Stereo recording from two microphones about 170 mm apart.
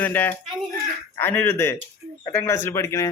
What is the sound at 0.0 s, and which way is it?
Speech, 10° left (ahead or behind).